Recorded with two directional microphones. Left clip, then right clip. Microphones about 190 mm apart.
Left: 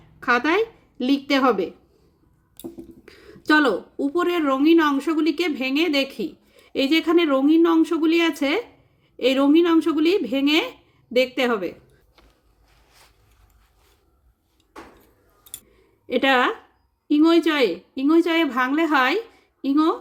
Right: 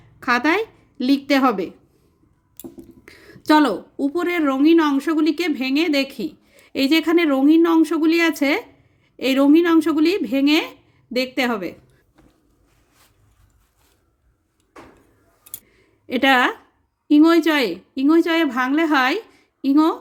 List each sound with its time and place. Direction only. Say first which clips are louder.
0.2 s speech: right 1 dB; 25° right (ahead or behind)
3.0 s a woman's voice: right 2 dB; 25° right (ahead or behind)
15.5 s clicking: left 1 dB; 25° right (ahead or behind)
17.1 s a woman's voice: right 3 dB; 25° right (ahead or behind)